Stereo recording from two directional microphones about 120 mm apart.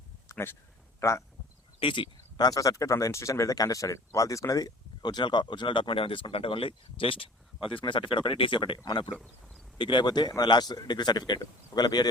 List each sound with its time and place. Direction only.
0.3 s a sound: 20° left (ahead or behind)
0.9 s a man's voice: 25° left (ahead or behind)
1.8 s speech: 45° left (ahead or behind)
9.0 s speech: 10° right (ahead or behind)
9.7 s speech: 40° left (ahead or behind)